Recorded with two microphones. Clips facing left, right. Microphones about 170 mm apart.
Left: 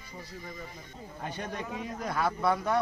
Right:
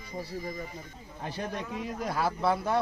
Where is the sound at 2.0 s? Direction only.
30° right (ahead or behind).